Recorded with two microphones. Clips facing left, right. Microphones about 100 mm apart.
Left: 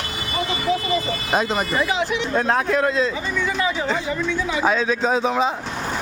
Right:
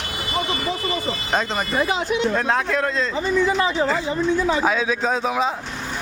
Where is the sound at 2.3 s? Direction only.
5° left (ahead or behind).